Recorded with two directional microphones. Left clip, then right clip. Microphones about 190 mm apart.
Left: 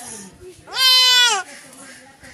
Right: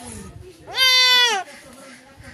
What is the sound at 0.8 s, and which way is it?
Cat, 30° left (ahead or behind).